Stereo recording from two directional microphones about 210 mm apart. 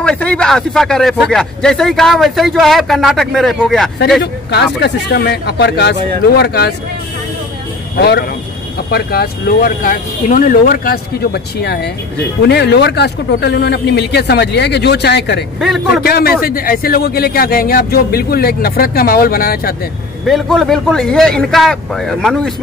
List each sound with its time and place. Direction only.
0.0 s speech: 5° left (ahead or behind)
4.2 s speech: 50° left (ahead or behind)
8.0 s speech: 50° left (ahead or behind)
20.2 s speech: centre (ahead or behind)